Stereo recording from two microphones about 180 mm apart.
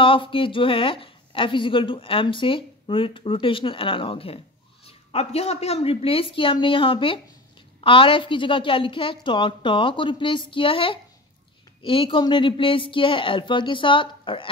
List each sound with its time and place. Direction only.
0.0 s a woman's voice: 30° left (ahead or behind)